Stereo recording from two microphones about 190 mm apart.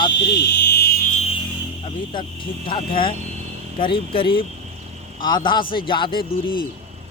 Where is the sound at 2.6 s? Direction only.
25° left (ahead or behind).